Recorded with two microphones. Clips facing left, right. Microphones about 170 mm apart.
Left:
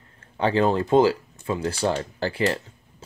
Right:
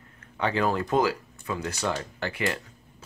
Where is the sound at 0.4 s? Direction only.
30° left (ahead or behind).